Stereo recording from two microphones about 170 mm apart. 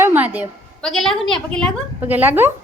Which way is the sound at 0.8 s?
Centre (ahead or behind).